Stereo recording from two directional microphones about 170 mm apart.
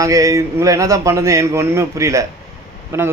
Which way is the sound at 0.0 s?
20° right (ahead or behind).